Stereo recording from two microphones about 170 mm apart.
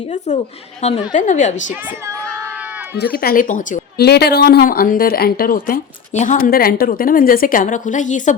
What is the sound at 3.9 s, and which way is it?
A woman's voice, 70° left (ahead or behind).